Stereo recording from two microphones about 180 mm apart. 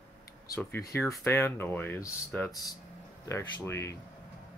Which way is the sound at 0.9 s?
15° left (ahead or behind).